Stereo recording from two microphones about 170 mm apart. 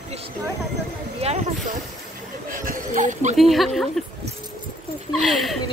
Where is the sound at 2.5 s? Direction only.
55° right (ahead or behind).